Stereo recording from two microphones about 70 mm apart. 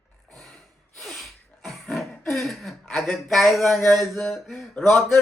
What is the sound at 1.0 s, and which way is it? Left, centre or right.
Throat clearing, centre.